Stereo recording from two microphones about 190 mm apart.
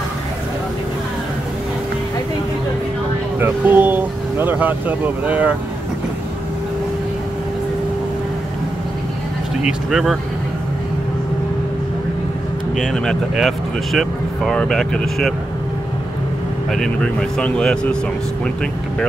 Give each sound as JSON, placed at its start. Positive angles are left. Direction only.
{"t": 3.3, "sound": "speech", "side_deg": -10}
{"t": 9.7, "sound": "speech", "side_deg": -5}
{"t": 12.7, "sound": "speech", "side_deg": 0}
{"t": 16.7, "sound": "speech", "side_deg": 5}